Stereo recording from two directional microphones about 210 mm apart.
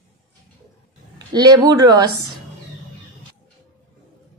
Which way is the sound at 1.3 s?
20° right (ahead or behind).